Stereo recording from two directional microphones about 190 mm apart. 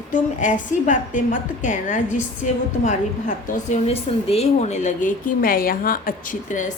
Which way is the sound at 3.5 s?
35° left (ahead or behind).